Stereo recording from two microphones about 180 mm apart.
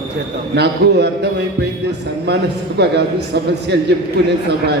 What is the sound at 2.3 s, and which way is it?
A man's voice, 65° right (ahead or behind).